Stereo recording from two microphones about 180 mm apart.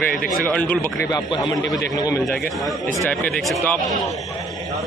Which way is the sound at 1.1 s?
25° left (ahead or behind).